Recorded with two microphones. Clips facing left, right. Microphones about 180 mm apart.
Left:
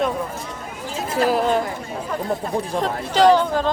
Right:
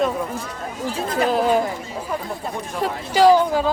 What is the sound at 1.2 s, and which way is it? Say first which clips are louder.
Speech: even; centre (ahead or behind).